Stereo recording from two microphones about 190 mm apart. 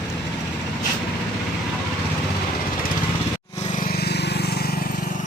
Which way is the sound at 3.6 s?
45° left (ahead or behind).